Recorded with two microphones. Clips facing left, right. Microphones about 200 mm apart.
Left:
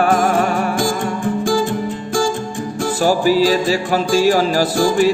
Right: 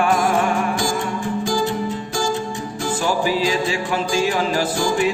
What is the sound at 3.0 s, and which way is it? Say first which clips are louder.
Music: left 7 dB; 40° left (ahead or behind).